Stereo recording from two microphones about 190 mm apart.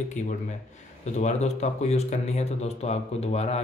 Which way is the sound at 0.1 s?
40° left (ahead or behind).